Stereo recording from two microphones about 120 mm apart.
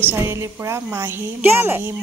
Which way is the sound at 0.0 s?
20° right (ahead or behind).